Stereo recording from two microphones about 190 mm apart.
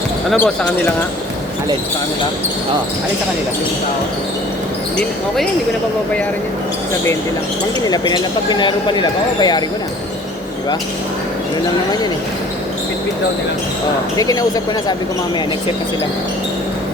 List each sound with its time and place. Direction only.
7.9 s speech: 20° left (ahead or behind)
14.2 s speech: 20° left (ahead or behind)